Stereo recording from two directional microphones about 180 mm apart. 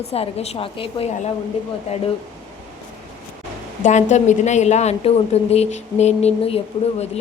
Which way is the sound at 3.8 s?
40° left (ahead or behind).